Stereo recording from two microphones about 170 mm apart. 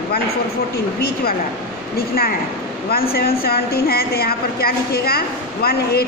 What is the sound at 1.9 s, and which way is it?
A woman's voice, 65° left (ahead or behind).